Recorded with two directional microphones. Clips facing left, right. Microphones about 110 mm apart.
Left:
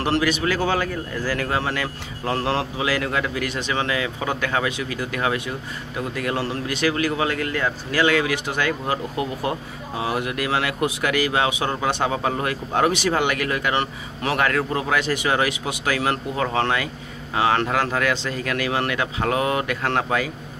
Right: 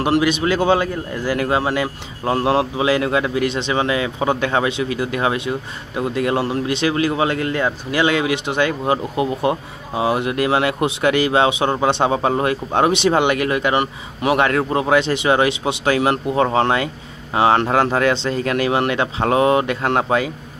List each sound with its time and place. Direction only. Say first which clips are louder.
0.0 s speech: right 4 dB; 20° right (ahead or behind)